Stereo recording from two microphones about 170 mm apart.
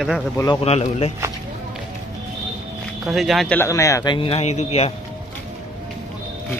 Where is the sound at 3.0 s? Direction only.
Centre (ahead or behind).